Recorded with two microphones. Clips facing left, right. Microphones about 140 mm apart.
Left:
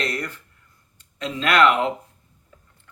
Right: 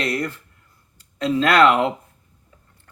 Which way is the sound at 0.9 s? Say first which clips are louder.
Right 9 dB; 35° right (ahead or behind).